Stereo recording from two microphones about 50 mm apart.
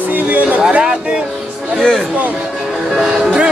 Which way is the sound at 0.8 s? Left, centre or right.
Centre.